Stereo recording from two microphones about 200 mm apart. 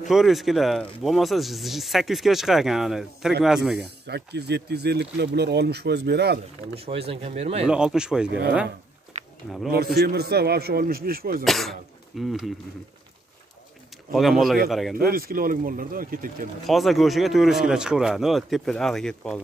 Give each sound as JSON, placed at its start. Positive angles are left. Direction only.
{"t": 0.1, "sound": "speech", "side_deg": 0}
{"t": 4.0, "sound": "speech", "side_deg": -55}
{"t": 6.9, "sound": "speech", "side_deg": -30}
{"t": 7.6, "sound": "speech", "side_deg": -5}
{"t": 9.9, "sound": "a man's voice", "side_deg": -50}
{"t": 11.4, "sound": "speech", "side_deg": 0}
{"t": 14.1, "sound": "speech", "side_deg": 0}
{"t": 15.0, "sound": "a man's voice", "side_deg": -45}
{"t": 16.6, "sound": "speech", "side_deg": 0}